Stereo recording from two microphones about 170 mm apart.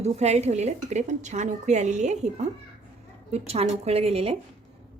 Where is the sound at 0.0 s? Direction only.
40° right (ahead or behind).